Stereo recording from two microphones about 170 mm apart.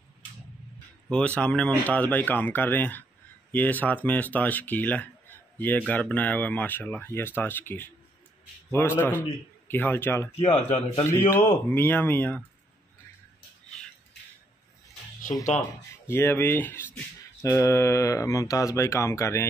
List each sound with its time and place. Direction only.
1.0 s speech: 5° left (ahead or behind)
10.3 s speech: 35° left (ahead or behind)
11.1 s speech: 15° left (ahead or behind)
16.1 s speech: 15° left (ahead or behind)